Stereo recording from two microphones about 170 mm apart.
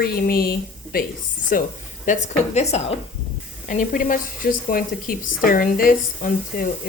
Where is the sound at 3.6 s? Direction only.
50° left (ahead or behind).